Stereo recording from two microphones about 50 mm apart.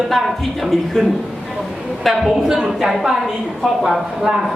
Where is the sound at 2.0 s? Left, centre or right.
Centre.